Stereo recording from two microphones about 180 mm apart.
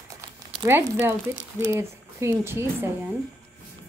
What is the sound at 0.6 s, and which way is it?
A woman's voice, 15° right (ahead or behind).